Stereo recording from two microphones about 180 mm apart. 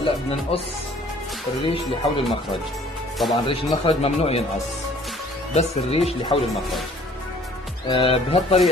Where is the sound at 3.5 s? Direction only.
30° left (ahead or behind).